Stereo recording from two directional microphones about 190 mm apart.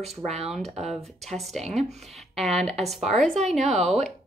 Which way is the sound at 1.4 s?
Centre (ahead or behind).